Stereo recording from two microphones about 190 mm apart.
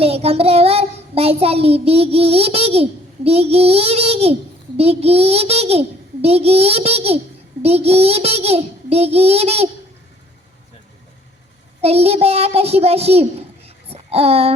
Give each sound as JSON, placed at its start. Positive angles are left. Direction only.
{"t": 0.0, "sound": "child singing", "side_deg": -30}
{"t": 11.8, "sound": "child singing", "side_deg": -35}